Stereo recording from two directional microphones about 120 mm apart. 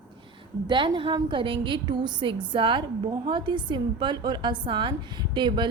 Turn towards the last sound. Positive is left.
turn(degrees=-40)  # may be behind; listen again after turning